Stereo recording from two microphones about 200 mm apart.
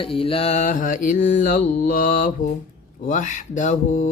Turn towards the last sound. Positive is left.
turn(degrees=40)  # may be behind; listen again after turning